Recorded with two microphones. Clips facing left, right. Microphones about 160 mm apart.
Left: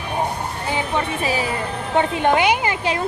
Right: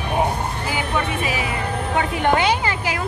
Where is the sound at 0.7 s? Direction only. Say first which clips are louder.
Left 2 dB; 30° left (ahead or behind).